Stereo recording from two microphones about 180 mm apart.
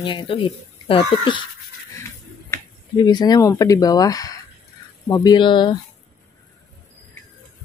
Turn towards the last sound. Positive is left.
turn(degrees=25)  # may be behind; listen again after turning